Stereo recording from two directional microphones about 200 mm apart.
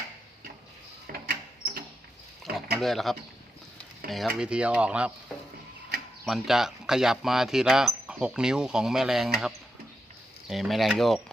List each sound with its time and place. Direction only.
1.0 s a sound: 50° right (ahead or behind)
2.7 s speech: centre (ahead or behind)
6.2 s speech: centre (ahead or behind)
10.5 s speech: centre (ahead or behind)